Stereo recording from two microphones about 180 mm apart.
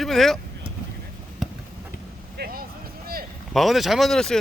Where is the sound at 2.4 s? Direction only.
55° right (ahead or behind).